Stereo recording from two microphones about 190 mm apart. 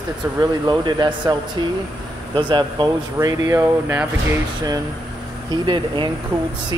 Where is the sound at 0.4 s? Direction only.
20° right (ahead or behind).